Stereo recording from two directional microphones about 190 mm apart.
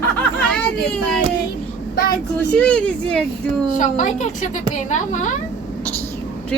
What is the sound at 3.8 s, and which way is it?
A woman's voice, 40° left (ahead or behind).